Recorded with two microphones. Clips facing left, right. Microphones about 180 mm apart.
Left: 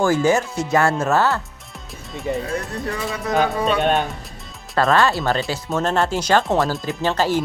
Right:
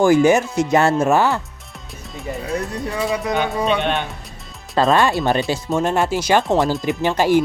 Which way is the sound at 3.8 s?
40° left (ahead or behind).